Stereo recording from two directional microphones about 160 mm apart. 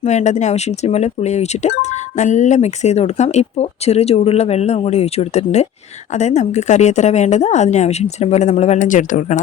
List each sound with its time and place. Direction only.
0.0 s speech: 45° left (ahead or behind)